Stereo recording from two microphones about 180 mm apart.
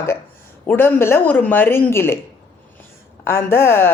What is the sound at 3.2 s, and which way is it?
Speech, 15° left (ahead or behind).